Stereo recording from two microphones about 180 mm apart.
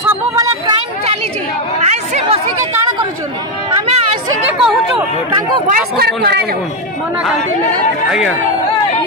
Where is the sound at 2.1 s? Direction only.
30° right (ahead or behind).